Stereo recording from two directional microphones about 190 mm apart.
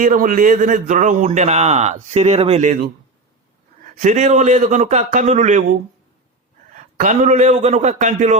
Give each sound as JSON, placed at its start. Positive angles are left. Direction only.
{"t": 0.0, "sound": "a man's voice", "side_deg": -45}
{"t": 4.0, "sound": "a man's voice", "side_deg": -40}
{"t": 6.7, "sound": "a man's voice", "side_deg": -40}